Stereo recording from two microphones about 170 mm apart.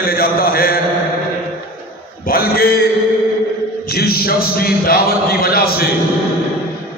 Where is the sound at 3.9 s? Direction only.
65° left (ahead or behind).